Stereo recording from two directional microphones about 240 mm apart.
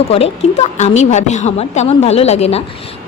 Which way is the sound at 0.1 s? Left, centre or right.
Left.